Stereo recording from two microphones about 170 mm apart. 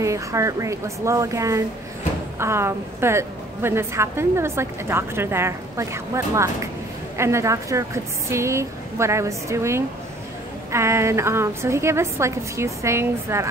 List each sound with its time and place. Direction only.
0.0 s a woman's voice: 20° right (ahead or behind)